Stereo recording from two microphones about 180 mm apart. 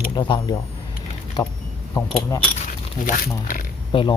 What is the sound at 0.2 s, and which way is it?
Speech, 25° left (ahead or behind).